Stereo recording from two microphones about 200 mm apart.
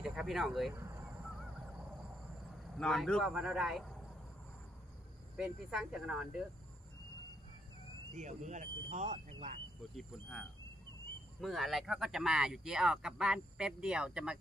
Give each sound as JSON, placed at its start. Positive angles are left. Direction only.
{"t": 0.0, "sound": "speech", "side_deg": -5}
{"t": 2.8, "sound": "speech", "side_deg": 0}
{"t": 5.4, "sound": "speech", "side_deg": 0}
{"t": 8.1, "sound": "speech", "side_deg": -35}
{"t": 9.9, "sound": "speech", "side_deg": 5}
{"t": 11.4, "sound": "speech", "side_deg": 0}